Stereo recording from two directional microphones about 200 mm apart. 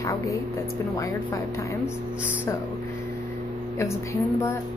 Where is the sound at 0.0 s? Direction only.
15° left (ahead or behind).